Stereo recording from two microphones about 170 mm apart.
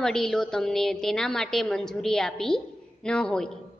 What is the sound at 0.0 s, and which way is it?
A woman's voice, 5° left (ahead or behind).